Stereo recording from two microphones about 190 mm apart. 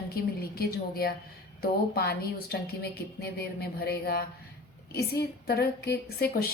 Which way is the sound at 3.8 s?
55° left (ahead or behind).